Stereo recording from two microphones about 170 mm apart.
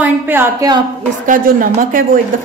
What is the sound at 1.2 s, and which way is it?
Speech, 55° right (ahead or behind).